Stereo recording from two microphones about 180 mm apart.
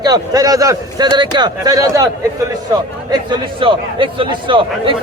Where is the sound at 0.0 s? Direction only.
20° right (ahead or behind).